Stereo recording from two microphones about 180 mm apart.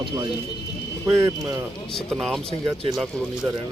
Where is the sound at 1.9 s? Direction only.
5° left (ahead or behind).